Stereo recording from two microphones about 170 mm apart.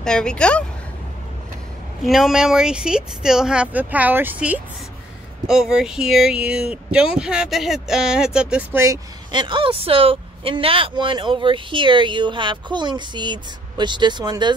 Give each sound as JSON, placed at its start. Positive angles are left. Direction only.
{"t": 0.0, "sound": "speech", "side_deg": 5}
{"t": 2.0, "sound": "speech", "side_deg": 0}